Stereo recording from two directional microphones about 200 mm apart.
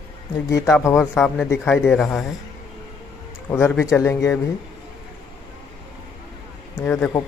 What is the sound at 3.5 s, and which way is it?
Speech, 10° left (ahead or behind).